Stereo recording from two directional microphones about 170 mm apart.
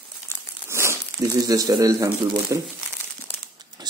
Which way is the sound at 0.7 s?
15° right (ahead or behind).